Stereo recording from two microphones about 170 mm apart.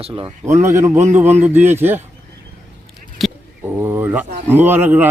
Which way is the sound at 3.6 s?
15° right (ahead or behind).